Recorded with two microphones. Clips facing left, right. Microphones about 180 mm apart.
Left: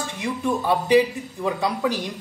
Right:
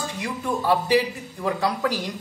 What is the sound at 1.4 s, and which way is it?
Speech, 20° left (ahead or behind).